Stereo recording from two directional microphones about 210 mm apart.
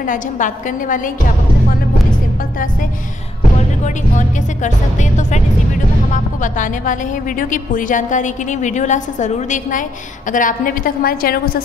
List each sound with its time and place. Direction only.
0.0 s a woman's voice: 40° left (ahead or behind)
3.8 s a woman's voice: 35° left (ahead or behind)
6.4 s a woman's voice: 40° left (ahead or behind)